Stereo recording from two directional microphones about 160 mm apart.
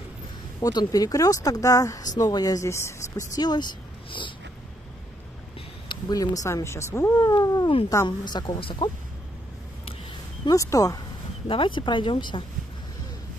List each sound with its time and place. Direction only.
0.6 s speech: 25° left (ahead or behind)
5.9 s speech: 25° left (ahead or behind)
10.4 s speech: 20° left (ahead or behind)
11.4 s speech: 30° left (ahead or behind)